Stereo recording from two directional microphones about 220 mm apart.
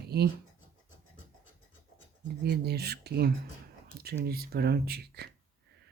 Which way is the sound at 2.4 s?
45° right (ahead or behind).